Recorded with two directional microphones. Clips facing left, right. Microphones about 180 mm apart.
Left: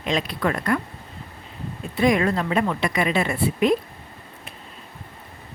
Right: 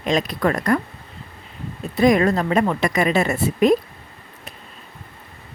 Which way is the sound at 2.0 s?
40° right (ahead or behind).